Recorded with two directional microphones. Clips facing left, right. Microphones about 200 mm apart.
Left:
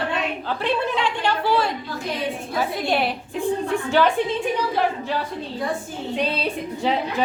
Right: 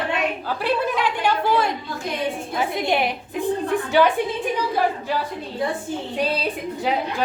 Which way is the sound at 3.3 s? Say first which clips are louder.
Right 1 dB; 5° right (ahead or behind).